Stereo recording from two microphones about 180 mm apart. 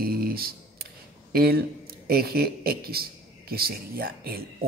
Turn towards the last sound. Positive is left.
turn(degrees=-55)  # may be behind; listen again after turning